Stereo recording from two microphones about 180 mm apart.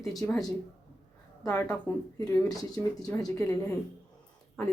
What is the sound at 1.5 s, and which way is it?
Speech, 5° left (ahead or behind).